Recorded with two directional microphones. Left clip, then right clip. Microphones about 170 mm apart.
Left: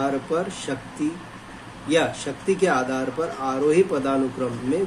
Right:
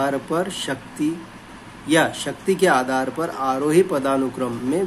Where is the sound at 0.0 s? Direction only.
30° right (ahead or behind).